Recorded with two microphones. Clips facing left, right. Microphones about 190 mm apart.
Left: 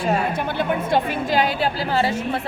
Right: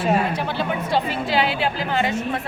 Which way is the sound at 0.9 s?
50° left (ahead or behind).